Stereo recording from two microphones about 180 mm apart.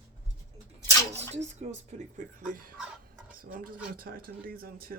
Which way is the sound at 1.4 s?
40° right (ahead or behind).